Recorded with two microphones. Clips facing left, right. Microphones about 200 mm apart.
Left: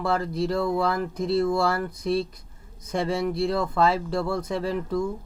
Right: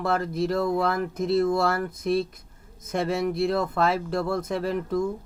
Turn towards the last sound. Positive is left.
turn(degrees=-55)  # may be behind; listen again after turning